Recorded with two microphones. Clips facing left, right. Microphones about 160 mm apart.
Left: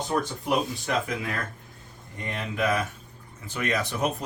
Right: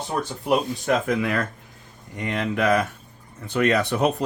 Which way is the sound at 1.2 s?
80° right.